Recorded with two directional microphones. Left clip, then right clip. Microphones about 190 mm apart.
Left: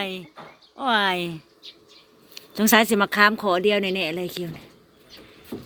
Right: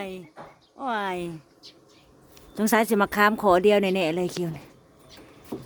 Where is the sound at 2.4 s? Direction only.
10° right (ahead or behind).